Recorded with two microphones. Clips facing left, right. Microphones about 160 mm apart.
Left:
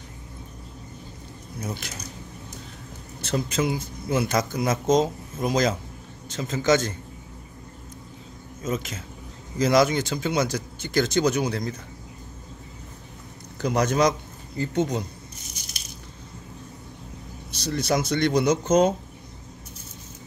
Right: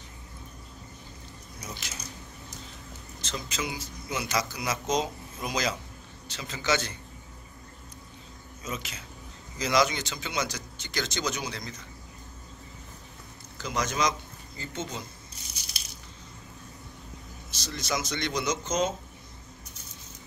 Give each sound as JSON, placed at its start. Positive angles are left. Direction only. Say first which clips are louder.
{"t": 1.6, "sound": "speech", "louder": "left 8 dB", "side_deg": 55}
{"t": 3.2, "sound": "speech", "louder": "left 10 dB", "side_deg": 60}
{"t": 8.6, "sound": "speech", "louder": "left 8 dB", "side_deg": 45}
{"t": 13.6, "sound": "speech", "louder": "left 8 dB", "side_deg": 60}
{"t": 17.5, "sound": "speech", "louder": "left 8 dB", "side_deg": 60}